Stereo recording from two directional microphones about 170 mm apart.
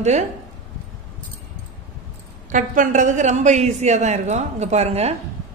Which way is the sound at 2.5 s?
50° right (ahead or behind).